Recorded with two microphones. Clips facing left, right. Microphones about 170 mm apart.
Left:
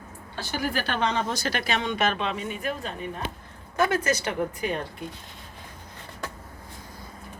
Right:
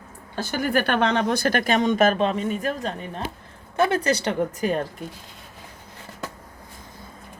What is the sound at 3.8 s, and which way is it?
Speech, 30° right (ahead or behind).